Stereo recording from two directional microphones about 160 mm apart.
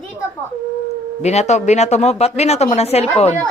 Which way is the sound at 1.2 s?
45° left (ahead or behind).